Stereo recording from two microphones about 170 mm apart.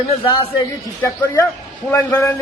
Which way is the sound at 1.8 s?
10° left (ahead or behind).